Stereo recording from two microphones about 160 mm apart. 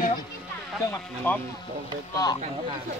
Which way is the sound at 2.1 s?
25° left (ahead or behind).